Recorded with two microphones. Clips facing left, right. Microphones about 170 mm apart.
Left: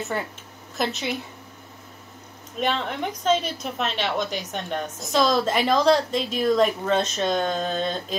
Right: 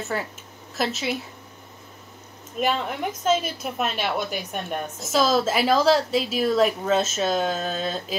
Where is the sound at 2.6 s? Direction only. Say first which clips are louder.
Right 1 dB; 5° right (ahead or behind).